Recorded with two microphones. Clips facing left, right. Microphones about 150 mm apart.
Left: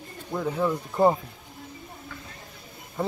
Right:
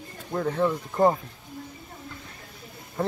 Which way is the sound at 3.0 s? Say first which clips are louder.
Right 1 dB; 10° left (ahead or behind).